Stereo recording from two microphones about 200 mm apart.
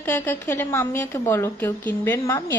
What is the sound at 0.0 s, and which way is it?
A woman's voice, 10° left (ahead or behind).